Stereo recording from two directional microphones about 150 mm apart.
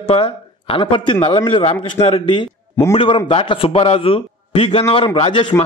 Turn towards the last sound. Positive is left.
turn(degrees=35)  # may be behind; listen again after turning